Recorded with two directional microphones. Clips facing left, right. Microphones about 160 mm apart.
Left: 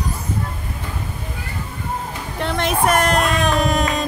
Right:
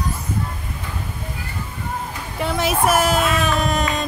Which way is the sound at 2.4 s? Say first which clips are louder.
Even; 5° right (ahead or behind).